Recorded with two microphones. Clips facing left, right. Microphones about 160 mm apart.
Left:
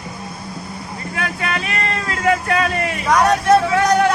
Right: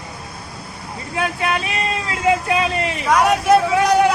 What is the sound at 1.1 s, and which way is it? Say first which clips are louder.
Speech: right 3 dB; 20° right (ahead or behind).